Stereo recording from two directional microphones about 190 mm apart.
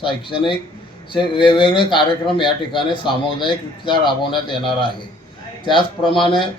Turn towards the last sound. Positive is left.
turn(degrees=25)  # may be behind; listen again after turning